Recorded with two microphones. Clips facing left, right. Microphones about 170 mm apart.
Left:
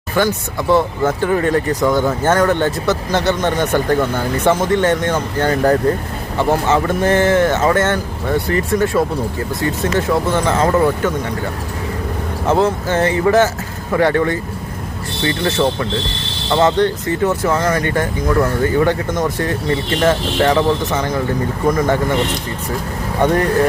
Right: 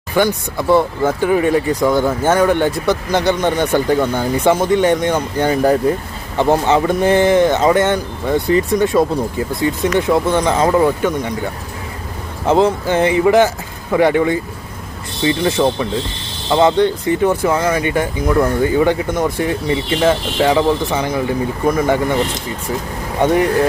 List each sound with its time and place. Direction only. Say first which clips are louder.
0.2 s speech: right 1 dB; 15° right (ahead or behind)
12.5 s speech: right 2 dB; 15° right (ahead or behind)
23.2 s speech: right 1 dB; 10° right (ahead or behind)